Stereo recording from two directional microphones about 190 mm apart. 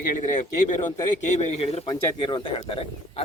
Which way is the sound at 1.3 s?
35° left (ahead or behind).